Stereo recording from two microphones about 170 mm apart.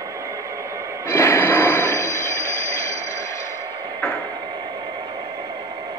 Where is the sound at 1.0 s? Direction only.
15° left (ahead or behind).